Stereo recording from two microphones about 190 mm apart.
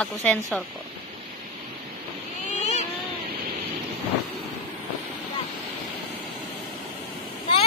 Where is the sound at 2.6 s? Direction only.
35° left (ahead or behind).